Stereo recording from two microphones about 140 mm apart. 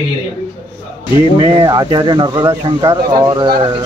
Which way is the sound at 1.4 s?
30° right (ahead or behind).